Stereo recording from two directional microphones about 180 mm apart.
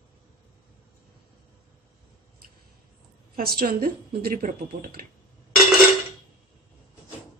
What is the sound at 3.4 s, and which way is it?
Speech, 55° right (ahead or behind).